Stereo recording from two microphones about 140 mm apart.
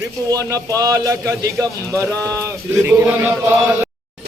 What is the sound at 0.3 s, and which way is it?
A man's voice, 25° right (ahead or behind).